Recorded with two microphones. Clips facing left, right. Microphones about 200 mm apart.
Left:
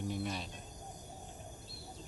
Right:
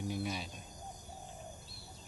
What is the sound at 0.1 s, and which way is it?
Cricket, 5° right (ahead or behind).